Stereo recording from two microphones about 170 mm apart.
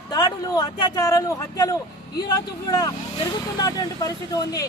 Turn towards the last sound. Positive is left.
turn(degrees=20)  # may be behind; listen again after turning